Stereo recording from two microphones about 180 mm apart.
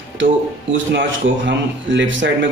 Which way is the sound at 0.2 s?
90° right.